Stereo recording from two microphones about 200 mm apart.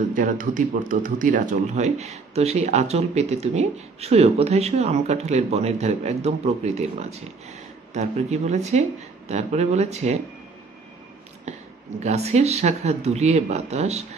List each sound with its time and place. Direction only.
0.1 s speech: 40° right (ahead or behind)
11.5 s a sound: 35° right (ahead or behind)
12.0 s speech: 35° right (ahead or behind)